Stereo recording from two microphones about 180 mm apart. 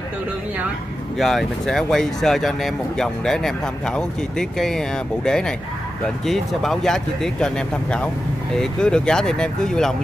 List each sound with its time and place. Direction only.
1.1 s speech: centre (ahead or behind)